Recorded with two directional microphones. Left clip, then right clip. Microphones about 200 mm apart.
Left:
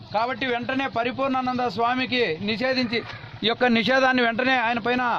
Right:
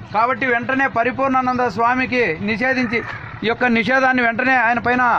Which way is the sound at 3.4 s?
55° left (ahead or behind).